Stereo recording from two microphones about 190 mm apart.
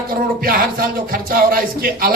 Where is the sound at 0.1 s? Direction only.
50° right (ahead or behind).